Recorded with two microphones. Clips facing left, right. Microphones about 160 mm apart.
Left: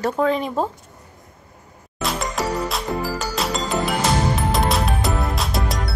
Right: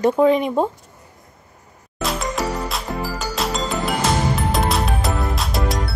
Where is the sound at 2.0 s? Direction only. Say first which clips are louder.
Right 1 dB; centre (ahead or behind).